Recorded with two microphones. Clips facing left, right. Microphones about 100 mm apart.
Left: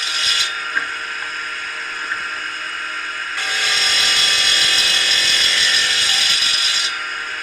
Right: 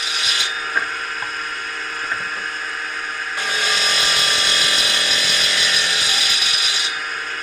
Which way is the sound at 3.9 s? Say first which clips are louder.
Right 1 dB; 35° right (ahead or behind).